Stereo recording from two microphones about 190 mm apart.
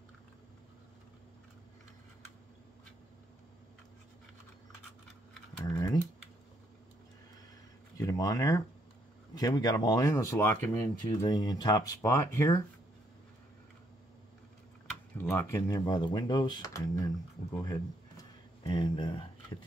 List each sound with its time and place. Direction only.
5.7 s typing: 15° left (ahead or behind)
8.0 s speech: 15° left (ahead or behind)
15.2 s speech: 15° left (ahead or behind)